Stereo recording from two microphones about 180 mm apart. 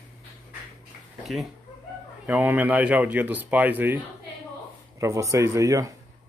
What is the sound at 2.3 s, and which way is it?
Speech, 10° right (ahead or behind).